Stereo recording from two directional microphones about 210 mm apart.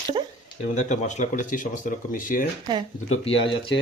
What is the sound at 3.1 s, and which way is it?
Speech, 25° left (ahead or behind).